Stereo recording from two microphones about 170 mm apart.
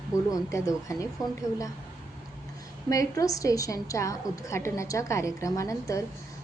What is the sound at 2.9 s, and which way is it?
A woman's voice, 20° left (ahead or behind).